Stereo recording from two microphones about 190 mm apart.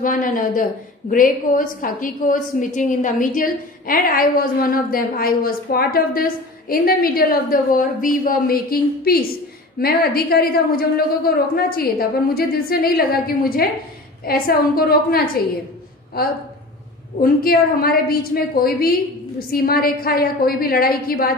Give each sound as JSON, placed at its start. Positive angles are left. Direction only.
{"t": 0.0, "sound": "a woman's voice", "side_deg": 45}